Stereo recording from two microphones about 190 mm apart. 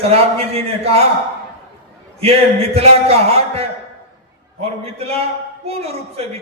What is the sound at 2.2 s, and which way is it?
Speech, 30° right (ahead or behind).